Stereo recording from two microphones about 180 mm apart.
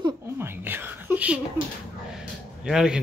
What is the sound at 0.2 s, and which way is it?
Whispering, 15° right (ahead or behind).